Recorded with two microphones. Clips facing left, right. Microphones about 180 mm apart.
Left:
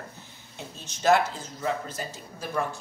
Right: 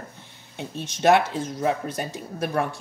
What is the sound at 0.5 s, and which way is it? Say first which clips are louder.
Speech: right 9 dB; 65° right (ahead or behind).